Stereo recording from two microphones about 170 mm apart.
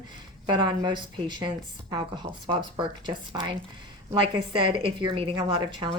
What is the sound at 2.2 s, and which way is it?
A woman's voice, 25° right (ahead or behind).